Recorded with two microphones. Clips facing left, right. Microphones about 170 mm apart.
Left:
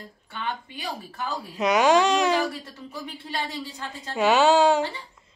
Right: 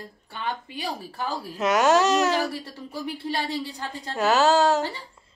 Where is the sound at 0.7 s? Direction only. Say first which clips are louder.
Right 2 dB; 35° right (ahead or behind).